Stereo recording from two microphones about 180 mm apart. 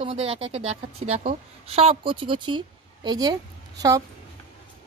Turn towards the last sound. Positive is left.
turn(degrees=-20)  # may be behind; listen again after turning